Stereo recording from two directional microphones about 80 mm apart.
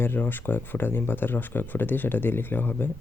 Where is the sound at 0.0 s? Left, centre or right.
Left.